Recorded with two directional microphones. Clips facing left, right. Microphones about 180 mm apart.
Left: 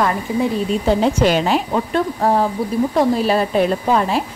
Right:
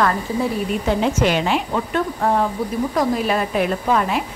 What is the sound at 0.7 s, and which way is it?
Speech, 35° left (ahead or behind).